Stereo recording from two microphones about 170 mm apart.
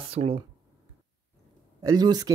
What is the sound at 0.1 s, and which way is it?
Speech, 35° right (ahead or behind).